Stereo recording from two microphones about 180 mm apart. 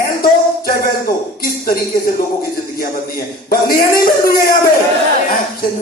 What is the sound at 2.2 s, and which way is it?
A man's voice, 55° left (ahead or behind).